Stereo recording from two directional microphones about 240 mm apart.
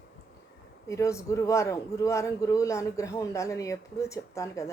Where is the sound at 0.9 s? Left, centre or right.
Centre.